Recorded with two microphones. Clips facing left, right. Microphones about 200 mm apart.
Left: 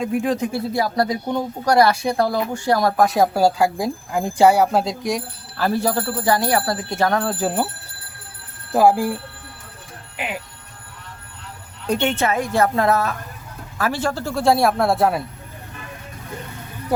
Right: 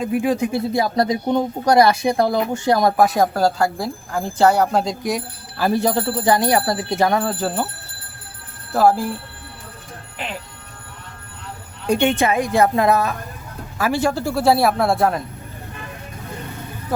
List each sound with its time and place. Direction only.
0.0 s speech: 5° right (ahead or behind)
0.7 s speech: 20° right (ahead or behind)
3.0 s a man's voice: centre (ahead or behind)
3.3 s speech: 10° left (ahead or behind)
5.6 s speech: 20° right (ahead or behind)
7.3 s speech: 10° left (ahead or behind)
8.7 s speech: 15° left (ahead or behind)
10.2 s speech: 10° left (ahead or behind)
11.9 s a man's voice: 15° right (ahead or behind)